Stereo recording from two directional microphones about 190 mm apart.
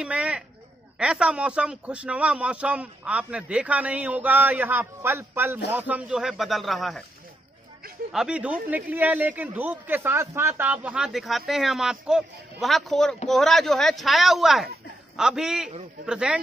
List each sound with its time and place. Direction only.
0.0 s a sound: 5° right (ahead or behind)
0.9 s a man's voice: 5° right (ahead or behind)
8.1 s a man's voice: 5° right (ahead or behind)